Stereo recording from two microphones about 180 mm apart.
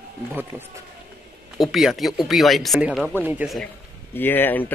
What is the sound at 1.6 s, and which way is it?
Speech, centre (ahead or behind).